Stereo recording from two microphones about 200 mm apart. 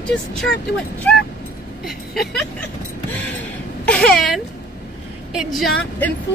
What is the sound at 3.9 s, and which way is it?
Speech, 5° left (ahead or behind).